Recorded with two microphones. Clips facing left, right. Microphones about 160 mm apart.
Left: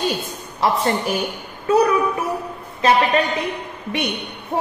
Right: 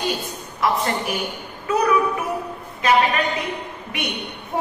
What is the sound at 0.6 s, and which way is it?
Speech, 30° left (ahead or behind).